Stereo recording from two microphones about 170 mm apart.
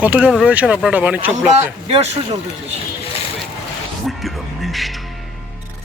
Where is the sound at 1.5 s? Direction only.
40° right (ahead or behind).